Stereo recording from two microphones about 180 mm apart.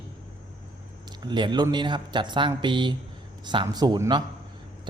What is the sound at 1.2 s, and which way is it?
Speech, 25° right (ahead or behind).